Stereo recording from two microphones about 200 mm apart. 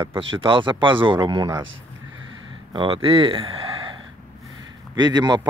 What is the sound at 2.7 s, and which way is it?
Speech, 25° right (ahead or behind).